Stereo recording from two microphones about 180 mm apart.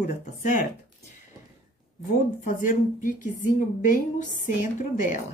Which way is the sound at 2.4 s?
45° left (ahead or behind).